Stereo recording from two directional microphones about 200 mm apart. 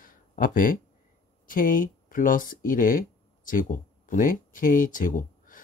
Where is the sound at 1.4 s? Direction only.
45° left (ahead or behind).